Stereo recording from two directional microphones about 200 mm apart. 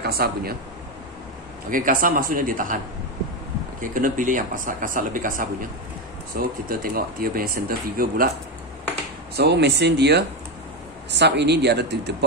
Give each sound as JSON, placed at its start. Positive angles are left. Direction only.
{"t": 0.0, "sound": "speech", "side_deg": -50}
{"t": 1.7, "sound": "speech", "side_deg": -40}
{"t": 3.8, "sound": "speech", "side_deg": -40}
{"t": 9.3, "sound": "speech", "side_deg": -55}